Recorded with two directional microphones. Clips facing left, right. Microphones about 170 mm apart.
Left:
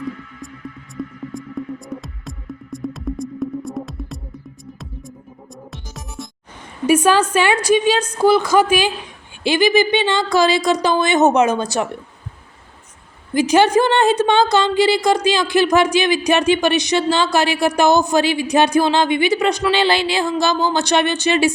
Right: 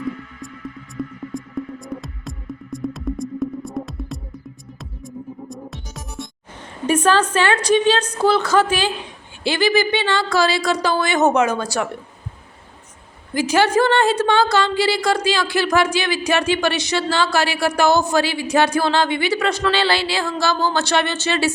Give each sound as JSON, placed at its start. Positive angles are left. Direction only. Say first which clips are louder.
{"t": 1.0, "sound": "music", "louder": "even", "side_deg": 0}
{"t": 5.5, "sound": "music", "louder": "right 3 dB", "side_deg": 0}
{"t": 6.8, "sound": "a woman's voice", "louder": "left 3 dB", "side_deg": 10}
{"t": 13.3, "sound": "a woman's voice", "louder": "left 3 dB", "side_deg": 20}